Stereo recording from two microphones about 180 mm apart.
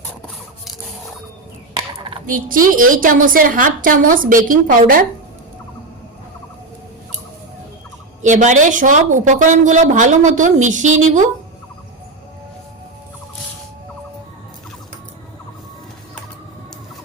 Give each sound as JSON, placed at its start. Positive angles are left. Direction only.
{"t": 1.7, "sound": "gobble", "side_deg": -25}
{"t": 2.2, "sound": "speech", "side_deg": -50}
{"t": 8.2, "sound": "speech", "side_deg": -40}